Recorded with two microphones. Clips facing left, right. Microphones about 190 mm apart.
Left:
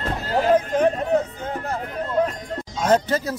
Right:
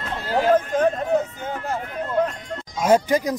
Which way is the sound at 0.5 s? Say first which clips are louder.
Left 1 dB; 10° left (ahead or behind).